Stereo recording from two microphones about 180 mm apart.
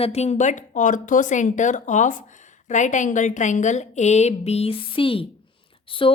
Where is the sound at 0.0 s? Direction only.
35° left (ahead or behind).